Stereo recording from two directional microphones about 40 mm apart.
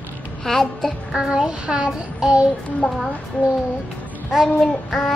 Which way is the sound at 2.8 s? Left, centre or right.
Centre.